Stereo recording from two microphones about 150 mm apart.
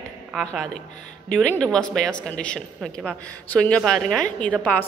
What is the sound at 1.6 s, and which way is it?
A woman's voice, 5° left (ahead or behind).